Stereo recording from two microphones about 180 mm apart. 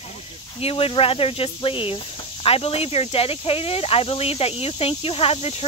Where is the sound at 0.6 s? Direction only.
30° left (ahead or behind).